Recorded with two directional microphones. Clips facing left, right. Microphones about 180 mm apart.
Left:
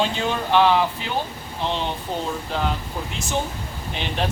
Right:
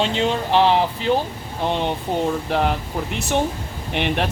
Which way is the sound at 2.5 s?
60° right (ahead or behind).